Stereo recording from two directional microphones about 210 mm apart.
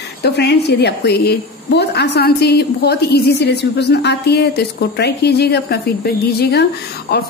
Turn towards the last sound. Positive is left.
turn(degrees=50)  # may be behind; listen again after turning